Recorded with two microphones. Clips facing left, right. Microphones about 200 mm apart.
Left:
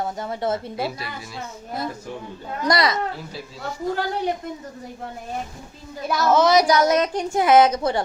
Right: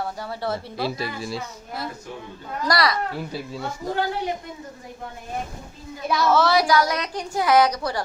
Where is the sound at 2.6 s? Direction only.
20° left (ahead or behind).